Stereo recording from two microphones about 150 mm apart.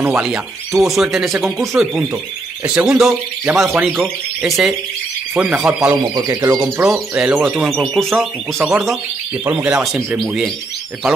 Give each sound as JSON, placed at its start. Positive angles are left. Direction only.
{"t": 0.0, "sound": "speech", "side_deg": -10}
{"t": 4.0, "sound": "speech", "side_deg": 0}
{"t": 6.1, "sound": "speech", "side_deg": -25}
{"t": 6.8, "sound": "speech", "side_deg": -5}
{"t": 7.7, "sound": "speech", "side_deg": 5}